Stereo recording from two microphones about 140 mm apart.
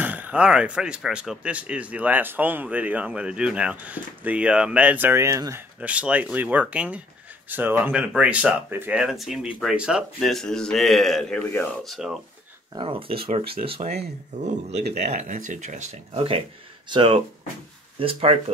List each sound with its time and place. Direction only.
0.0 s speech: 10° right (ahead or behind)
5.8 s speech: 10° right (ahead or behind)
11.4 s speech: 15° left (ahead or behind)
11.8 s speech: centre (ahead or behind)
12.7 s speech: 40° right (ahead or behind)